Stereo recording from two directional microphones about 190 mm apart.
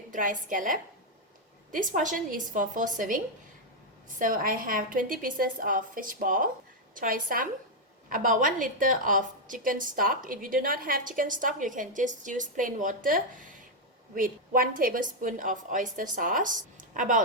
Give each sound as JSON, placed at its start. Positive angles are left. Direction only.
{"t": 0.1, "sound": "a woman's voice", "side_deg": -45}
{"t": 4.2, "sound": "a woman's voice", "side_deg": -45}